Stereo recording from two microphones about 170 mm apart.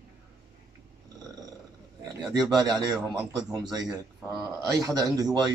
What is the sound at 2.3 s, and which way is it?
Speech, 25° right (ahead or behind).